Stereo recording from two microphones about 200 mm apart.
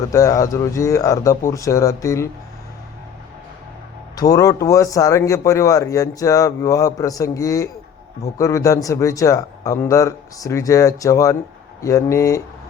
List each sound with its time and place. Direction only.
0.1 s speech: 15° left (ahead or behind)
4.2 s speech: 15° left (ahead or behind)